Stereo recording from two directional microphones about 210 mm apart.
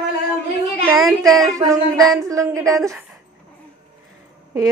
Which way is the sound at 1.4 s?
15° right (ahead or behind).